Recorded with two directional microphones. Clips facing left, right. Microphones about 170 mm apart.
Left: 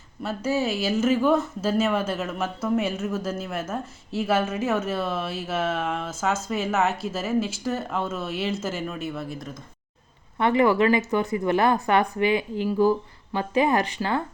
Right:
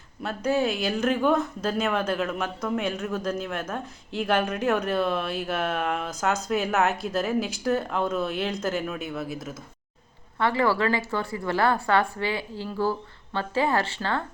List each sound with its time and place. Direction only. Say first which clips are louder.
0.2 s speech: right 1 dB; 5° left (ahead or behind)
10.3 s a woman's voice: left 4 dB; 20° left (ahead or behind)